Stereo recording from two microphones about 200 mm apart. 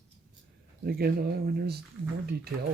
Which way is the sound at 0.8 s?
50° right (ahead or behind).